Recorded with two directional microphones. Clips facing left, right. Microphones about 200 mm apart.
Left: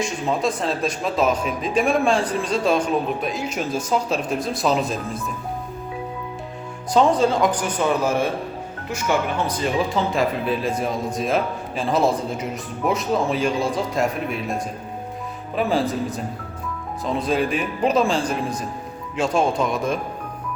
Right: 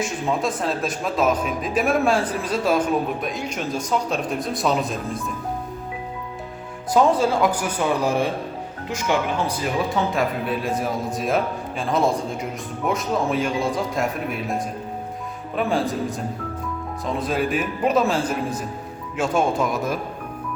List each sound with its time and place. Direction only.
0.0 s speech: centre (ahead or behind)
6.9 s speech: 5° right (ahead or behind)
9.9 s speech: centre (ahead or behind)